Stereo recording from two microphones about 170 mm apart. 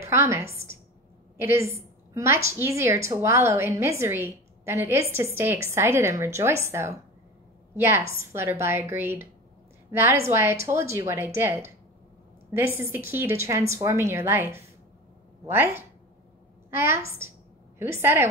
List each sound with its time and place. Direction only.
0.0 s a woman's voice: 15° right (ahead or behind)